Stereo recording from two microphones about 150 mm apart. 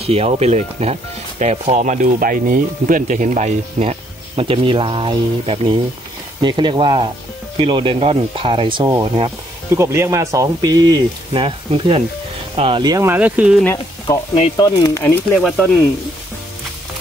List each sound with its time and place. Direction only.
0.0 s speech: 40° right (ahead or behind)
4.4 s speech: 35° right (ahead or behind)
9.8 s speech: 20° right (ahead or behind); by 12.8 s 40° right (ahead or behind)
12.8 s speech: 25° right (ahead or behind)
13.1 s speech: 10° right (ahead or behind)
14.1 s speech: 20° left (ahead or behind)
15.3 s speech: 5° left (ahead or behind)